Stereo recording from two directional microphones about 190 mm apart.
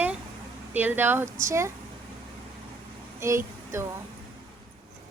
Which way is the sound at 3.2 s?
15° right (ahead or behind).